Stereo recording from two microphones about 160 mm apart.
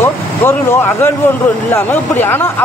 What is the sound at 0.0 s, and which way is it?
Speech, 15° left (ahead or behind).